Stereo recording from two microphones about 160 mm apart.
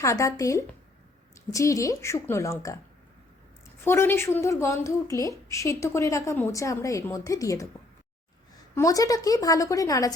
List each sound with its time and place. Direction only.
0.0 s a woman's voice: 20° left (ahead or behind)
3.8 s a woman's voice: 15° left (ahead or behind)
8.7 s a woman's voice: 20° left (ahead or behind)